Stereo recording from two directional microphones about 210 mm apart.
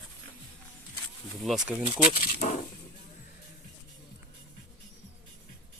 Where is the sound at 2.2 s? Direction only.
45° left (ahead or behind).